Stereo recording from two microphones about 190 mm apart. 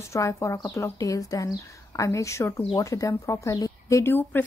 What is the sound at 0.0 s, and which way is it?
Speech, 15° left (ahead or behind).